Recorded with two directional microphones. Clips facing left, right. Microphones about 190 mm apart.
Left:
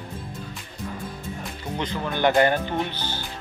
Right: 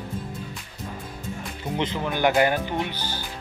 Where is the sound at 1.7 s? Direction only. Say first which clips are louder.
Right 1 dB; 20° right (ahead or behind).